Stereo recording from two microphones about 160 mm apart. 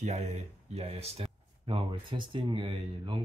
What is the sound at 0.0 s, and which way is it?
Speech, 45° right (ahead or behind).